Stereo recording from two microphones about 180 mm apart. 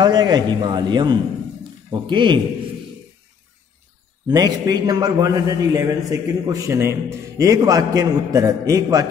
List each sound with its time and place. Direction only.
0.0 s a man's voice: 25° right (ahead or behind)
4.3 s a man's voice: 20° right (ahead or behind)